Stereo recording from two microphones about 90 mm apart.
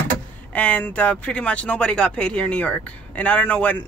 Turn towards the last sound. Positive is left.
turn(degrees=20)  # may be behind; listen again after turning